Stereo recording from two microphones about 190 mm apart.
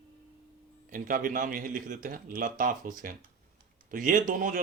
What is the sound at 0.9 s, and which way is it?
A man's voice, 45° right (ahead or behind).